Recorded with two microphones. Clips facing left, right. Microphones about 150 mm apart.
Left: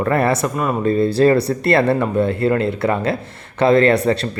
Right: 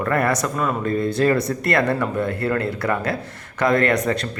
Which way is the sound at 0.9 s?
30° left (ahead or behind).